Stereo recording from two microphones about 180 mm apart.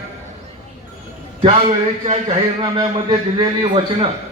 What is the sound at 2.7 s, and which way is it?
Speech, 20° right (ahead or behind).